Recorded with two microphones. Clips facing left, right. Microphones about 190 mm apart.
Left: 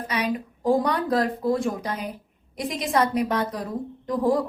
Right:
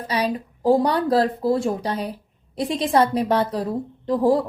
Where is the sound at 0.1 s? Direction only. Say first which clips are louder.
Right 3 dB; 30° right (ahead or behind).